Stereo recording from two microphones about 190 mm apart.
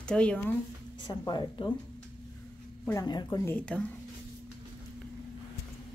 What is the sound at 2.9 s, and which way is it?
Speech, 20° left (ahead or behind).